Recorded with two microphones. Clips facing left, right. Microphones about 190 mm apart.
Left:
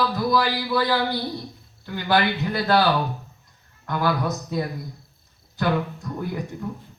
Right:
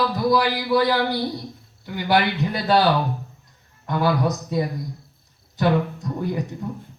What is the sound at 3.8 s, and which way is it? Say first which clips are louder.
Speech: right 3 dB; 20° right (ahead or behind).